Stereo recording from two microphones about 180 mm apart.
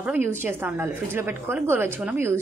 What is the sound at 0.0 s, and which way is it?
A woman's voice, 10° right (ahead or behind).